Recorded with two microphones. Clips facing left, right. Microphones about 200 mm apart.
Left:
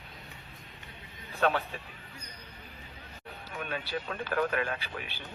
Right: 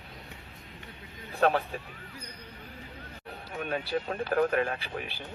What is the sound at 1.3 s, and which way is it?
Speech, 35° right (ahead or behind).